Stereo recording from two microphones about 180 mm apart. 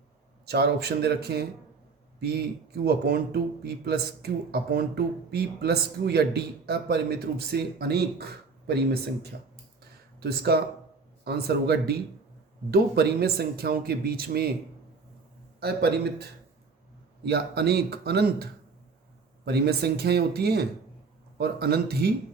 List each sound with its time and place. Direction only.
0.4 s a man's voice: 60° right (ahead or behind)
2.8 s a man's voice: 60° right (ahead or behind)
15.6 s a man's voice: 65° right (ahead or behind)
17.2 s a man's voice: 65° right (ahead or behind)
19.5 s a man's voice: 65° right (ahead or behind)